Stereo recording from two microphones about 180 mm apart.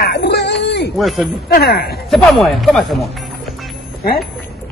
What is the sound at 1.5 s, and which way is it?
Speech, 60° left (ahead or behind).